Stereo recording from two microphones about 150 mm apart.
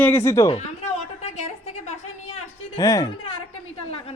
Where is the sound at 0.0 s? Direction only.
15° left (ahead or behind).